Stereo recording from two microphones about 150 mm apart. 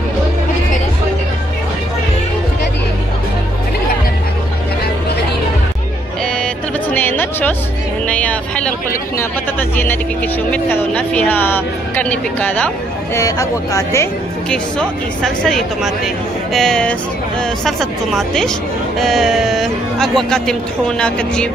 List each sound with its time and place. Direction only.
6.4 s music: 10° left (ahead or behind)
9.2 s speech: 15° left (ahead or behind)
13.1 s speech: 20° left (ahead or behind)
14.5 s speech: 5° left (ahead or behind)
16.5 s speech: 5° left (ahead or behind)